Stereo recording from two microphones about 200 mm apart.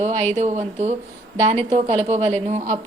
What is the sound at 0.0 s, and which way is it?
A woman's voice, 35° right (ahead or behind).